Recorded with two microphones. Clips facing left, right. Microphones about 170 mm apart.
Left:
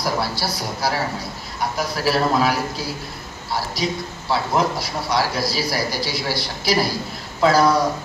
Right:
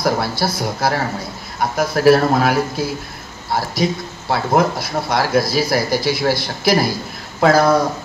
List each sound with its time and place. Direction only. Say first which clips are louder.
0.0 s a man's voice: right 5 dB; 50° right (ahead or behind)
4.3 s a man's voice: right 4 dB; 50° right (ahead or behind)